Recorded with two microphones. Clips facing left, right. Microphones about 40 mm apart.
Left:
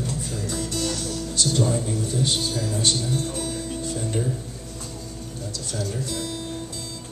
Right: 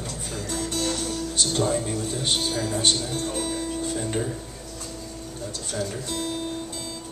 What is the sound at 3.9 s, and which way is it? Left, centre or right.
Music, right.